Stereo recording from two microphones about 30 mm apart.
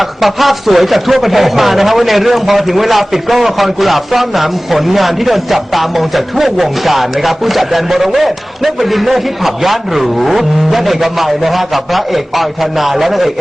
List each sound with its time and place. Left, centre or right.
0.2 s speech: centre